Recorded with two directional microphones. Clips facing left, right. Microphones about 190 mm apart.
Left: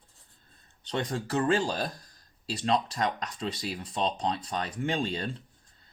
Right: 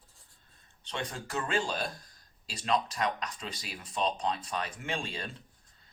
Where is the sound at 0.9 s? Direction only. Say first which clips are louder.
Left 7 dB; 35° left (ahead or behind).